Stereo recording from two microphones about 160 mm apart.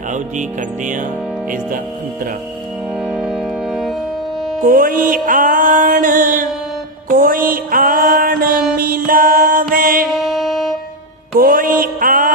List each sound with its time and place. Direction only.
3.1 s music: 5° right (ahead or behind)
4.6 s music: 60° right (ahead or behind)
10.2 s wind instrument: centre (ahead or behind)
11.3 s music: 60° right (ahead or behind)
11.8 s a sound: 60° right (ahead or behind)